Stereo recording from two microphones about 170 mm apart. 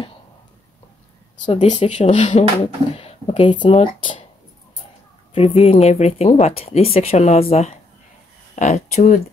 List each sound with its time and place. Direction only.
1.4 s speech: 35° left (ahead or behind)
5.3 s speech: 40° left (ahead or behind)